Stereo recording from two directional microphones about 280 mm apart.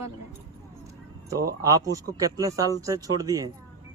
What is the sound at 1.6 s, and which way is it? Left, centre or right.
Speech, centre.